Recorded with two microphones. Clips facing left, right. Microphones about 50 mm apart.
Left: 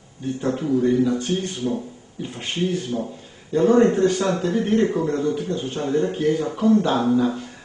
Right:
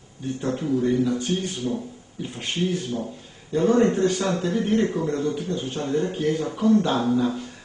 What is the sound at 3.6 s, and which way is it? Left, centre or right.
Speech, centre.